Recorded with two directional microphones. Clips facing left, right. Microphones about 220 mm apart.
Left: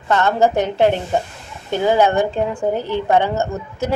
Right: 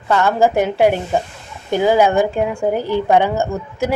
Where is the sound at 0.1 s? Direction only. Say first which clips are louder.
Right 1 dB; 10° right (ahead or behind).